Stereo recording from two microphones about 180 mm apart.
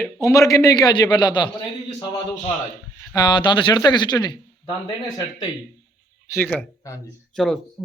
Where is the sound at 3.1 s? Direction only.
25° left (ahead or behind).